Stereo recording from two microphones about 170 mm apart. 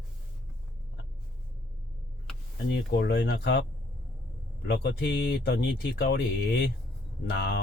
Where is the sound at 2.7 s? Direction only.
80° left.